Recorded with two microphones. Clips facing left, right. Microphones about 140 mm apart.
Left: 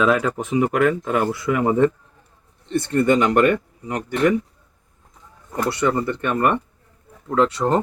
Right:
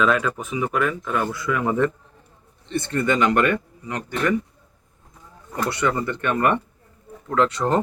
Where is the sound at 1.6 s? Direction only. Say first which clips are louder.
Left 4 dB; 35° left (ahead or behind).